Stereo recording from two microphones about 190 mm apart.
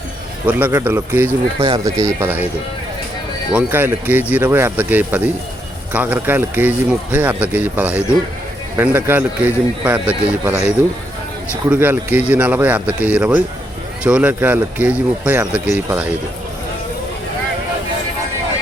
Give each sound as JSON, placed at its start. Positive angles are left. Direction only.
{"t": 0.4, "sound": "speech", "side_deg": -10}
{"t": 1.5, "sound": "speech", "side_deg": -30}
{"t": 1.8, "sound": "speech", "side_deg": -15}
{"t": 3.5, "sound": "speech", "side_deg": -10}